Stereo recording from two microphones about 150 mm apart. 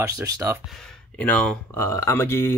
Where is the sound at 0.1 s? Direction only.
20° right (ahead or behind).